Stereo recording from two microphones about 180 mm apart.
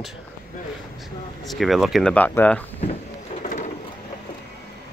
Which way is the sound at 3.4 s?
40° left (ahead or behind).